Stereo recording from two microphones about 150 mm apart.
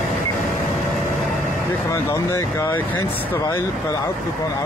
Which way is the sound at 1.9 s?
20° left (ahead or behind).